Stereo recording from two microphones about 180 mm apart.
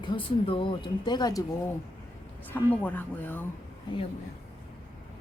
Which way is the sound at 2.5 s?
10° left (ahead or behind).